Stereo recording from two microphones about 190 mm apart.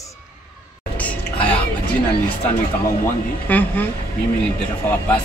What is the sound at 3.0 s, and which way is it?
Speech, 10° left (ahead or behind).